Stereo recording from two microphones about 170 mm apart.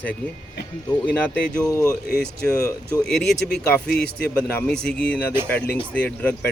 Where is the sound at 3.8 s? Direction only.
70° left (ahead or behind).